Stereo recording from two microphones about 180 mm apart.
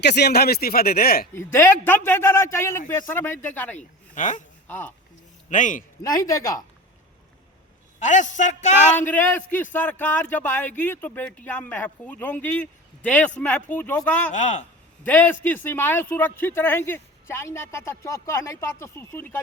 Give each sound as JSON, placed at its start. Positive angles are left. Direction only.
{"t": 0.0, "sound": "speech", "side_deg": 65}
{"t": 1.3, "sound": "speech", "side_deg": 15}
{"t": 3.8, "sound": "speech", "side_deg": 45}
{"t": 4.7, "sound": "speech", "side_deg": 10}
{"t": 5.5, "sound": "a man's voice", "side_deg": 45}
{"t": 6.0, "sound": "speech", "side_deg": 20}
{"t": 7.9, "sound": "a man's voice", "side_deg": 40}
{"t": 9.0, "sound": "speech", "side_deg": 10}
{"t": 14.3, "sound": "speech", "side_deg": 40}
{"t": 15.0, "sound": "speech", "side_deg": 10}